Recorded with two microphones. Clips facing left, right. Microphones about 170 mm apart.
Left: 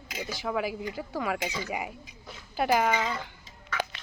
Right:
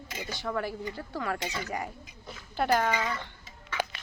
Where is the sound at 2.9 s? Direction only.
20° left (ahead or behind).